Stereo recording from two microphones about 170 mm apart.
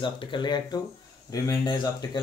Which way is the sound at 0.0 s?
30° left (ahead or behind).